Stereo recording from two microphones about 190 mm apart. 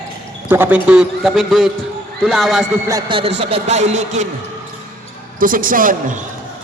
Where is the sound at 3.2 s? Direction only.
30° right (ahead or behind).